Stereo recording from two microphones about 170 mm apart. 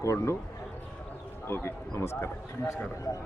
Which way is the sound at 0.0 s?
15° left (ahead or behind).